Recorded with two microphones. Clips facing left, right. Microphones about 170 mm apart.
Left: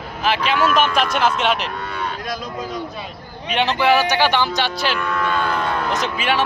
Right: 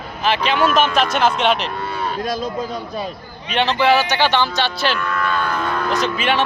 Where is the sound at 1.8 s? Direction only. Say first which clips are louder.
Right 4 dB; 30° right (ahead or behind).